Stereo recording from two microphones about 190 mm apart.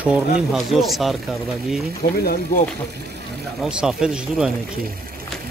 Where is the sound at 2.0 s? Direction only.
50° left (ahead or behind).